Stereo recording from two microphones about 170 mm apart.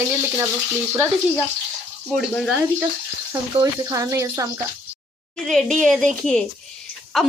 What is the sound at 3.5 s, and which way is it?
Speech, 20° right (ahead or behind).